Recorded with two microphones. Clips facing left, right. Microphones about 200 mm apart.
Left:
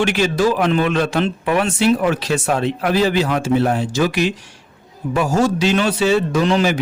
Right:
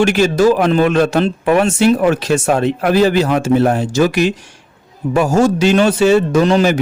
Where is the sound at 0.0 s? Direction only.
45° right (ahead or behind).